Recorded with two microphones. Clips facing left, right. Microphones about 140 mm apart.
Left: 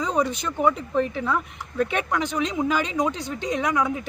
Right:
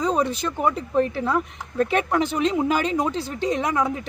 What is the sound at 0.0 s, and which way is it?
Speech, 30° right (ahead or behind).